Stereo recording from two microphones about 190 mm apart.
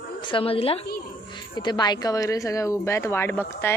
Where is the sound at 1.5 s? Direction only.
25° left (ahead or behind).